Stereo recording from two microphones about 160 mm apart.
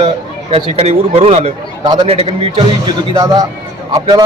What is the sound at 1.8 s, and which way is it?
Speech, 25° right (ahead or behind).